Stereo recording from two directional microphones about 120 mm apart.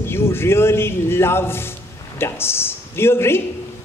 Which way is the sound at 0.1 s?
20° left (ahead or behind).